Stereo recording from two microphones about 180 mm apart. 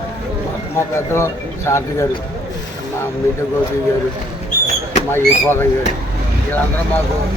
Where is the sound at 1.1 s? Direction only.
15° left (ahead or behind).